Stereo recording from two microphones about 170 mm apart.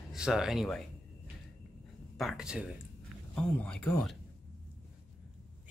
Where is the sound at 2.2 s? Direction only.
5° right (ahead or behind).